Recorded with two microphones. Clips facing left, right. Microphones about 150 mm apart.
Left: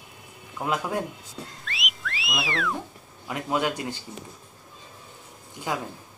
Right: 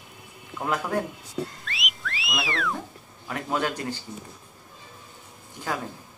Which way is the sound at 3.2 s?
15° left (ahead or behind).